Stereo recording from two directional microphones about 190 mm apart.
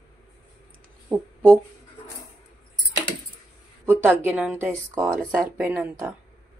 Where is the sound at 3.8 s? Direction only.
10° right (ahead or behind).